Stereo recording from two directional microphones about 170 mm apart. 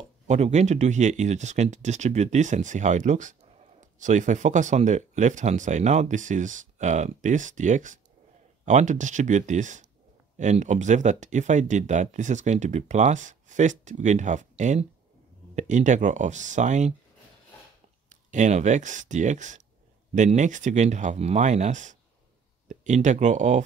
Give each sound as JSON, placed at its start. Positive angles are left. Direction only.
{"t": 0.3, "sound": "speech", "side_deg": -40}
{"t": 18.1, "sound": "speech", "side_deg": -45}